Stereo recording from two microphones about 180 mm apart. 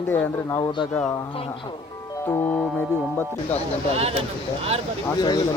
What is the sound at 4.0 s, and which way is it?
Speech, 35° right (ahead or behind).